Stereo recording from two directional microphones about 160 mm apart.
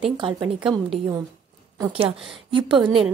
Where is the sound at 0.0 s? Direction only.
30° right (ahead or behind).